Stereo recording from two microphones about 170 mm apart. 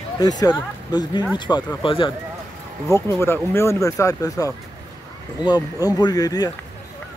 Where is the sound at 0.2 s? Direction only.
25° left (ahead or behind).